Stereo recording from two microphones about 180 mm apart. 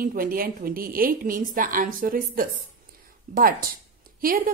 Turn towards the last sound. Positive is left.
turn(degrees=-50)  # may be behind; listen again after turning